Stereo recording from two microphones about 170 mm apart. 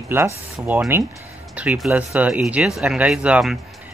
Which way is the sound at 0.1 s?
10° right (ahead or behind).